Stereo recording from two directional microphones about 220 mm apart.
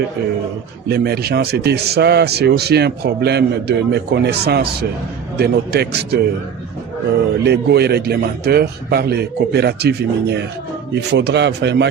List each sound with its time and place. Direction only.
0.9 s a man's voice: 45° right (ahead or behind)
7.4 s a man's voice: 50° right (ahead or behind)